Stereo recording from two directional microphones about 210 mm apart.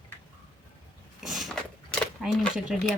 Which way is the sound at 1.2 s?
Centre (ahead or behind).